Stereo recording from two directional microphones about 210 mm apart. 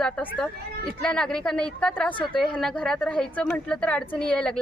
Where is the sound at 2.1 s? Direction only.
25° left (ahead or behind).